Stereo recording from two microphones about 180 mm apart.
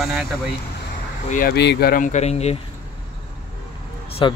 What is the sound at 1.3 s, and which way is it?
Speech, 55° left (ahead or behind).